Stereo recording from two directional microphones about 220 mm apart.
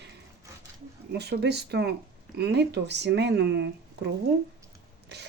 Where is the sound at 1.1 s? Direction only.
50° right (ahead or behind).